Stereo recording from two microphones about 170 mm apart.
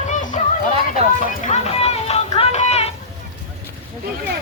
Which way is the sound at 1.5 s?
35° left (ahead or behind).